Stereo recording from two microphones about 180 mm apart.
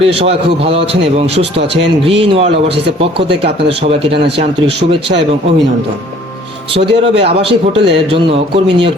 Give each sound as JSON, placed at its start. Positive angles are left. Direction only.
{"t": 0.0, "sound": "a man's voice", "side_deg": -35}
{"t": 6.7, "sound": "a man's voice", "side_deg": -35}